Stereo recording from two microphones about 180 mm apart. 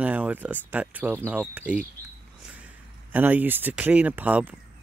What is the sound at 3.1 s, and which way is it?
Speech, 10° right (ahead or behind).